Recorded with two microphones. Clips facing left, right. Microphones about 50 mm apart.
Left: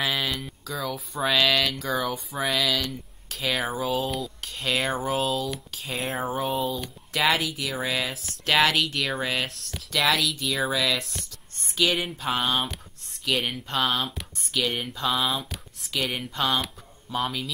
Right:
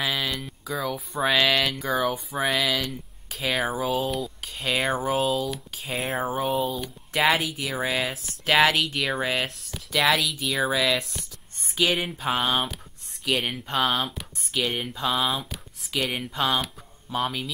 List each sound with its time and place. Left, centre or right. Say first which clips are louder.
0.0 s a sound: even; centre
0.7 s speech: right 3 dB; centre
7.1 s speech: right 1 dB; centre